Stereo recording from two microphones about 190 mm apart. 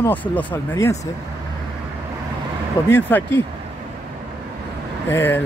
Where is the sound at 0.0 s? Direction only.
10° left (ahead or behind).